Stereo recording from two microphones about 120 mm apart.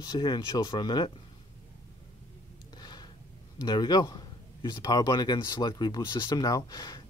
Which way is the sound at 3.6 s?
35° left (ahead or behind).